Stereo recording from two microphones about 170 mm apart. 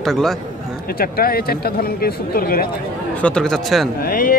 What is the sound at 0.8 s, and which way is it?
Speech, 60° left (ahead or behind).